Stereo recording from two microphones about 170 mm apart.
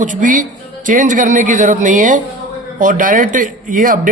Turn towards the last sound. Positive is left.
turn(degrees=-50)  # may be behind; listen again after turning